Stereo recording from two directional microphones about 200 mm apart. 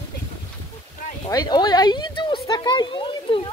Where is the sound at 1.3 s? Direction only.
20° left (ahead or behind).